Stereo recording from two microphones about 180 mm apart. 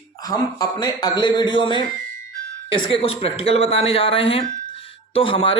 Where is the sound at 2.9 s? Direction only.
30° left (ahead or behind).